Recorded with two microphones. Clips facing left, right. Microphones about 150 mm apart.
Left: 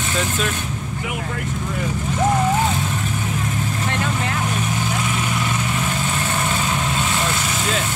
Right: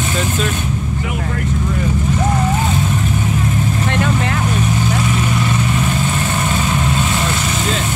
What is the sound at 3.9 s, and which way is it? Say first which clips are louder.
Speech: right 6 dB; 70° right (ahead or behind).